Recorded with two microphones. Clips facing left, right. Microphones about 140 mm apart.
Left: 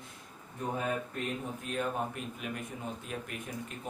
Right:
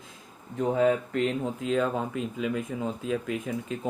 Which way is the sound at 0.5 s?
90° right.